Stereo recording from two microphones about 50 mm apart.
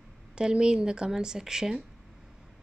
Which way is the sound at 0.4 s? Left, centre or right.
Centre.